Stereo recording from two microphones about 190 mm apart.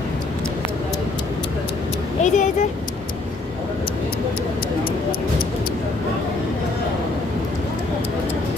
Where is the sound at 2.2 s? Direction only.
40° left (ahead or behind).